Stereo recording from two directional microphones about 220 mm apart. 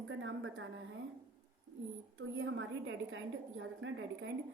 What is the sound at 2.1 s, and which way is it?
A woman's voice, 60° right (ahead or behind).